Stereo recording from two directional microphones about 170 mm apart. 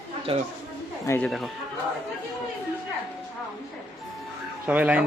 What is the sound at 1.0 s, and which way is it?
Speech, 15° left (ahead or behind).